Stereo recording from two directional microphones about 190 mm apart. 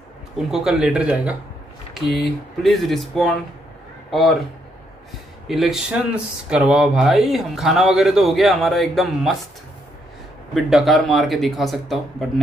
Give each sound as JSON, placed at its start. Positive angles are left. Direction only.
{"t": 0.4, "sound": "a man's voice", "side_deg": 0}
{"t": 5.5, "sound": "speech", "side_deg": 0}
{"t": 10.5, "sound": "speech", "side_deg": 0}